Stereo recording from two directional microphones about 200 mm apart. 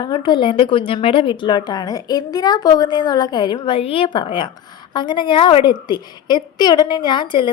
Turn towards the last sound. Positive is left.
turn(degrees=20)  # may be behind; listen again after turning